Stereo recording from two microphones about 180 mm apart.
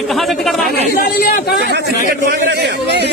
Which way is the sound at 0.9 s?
55° left (ahead or behind).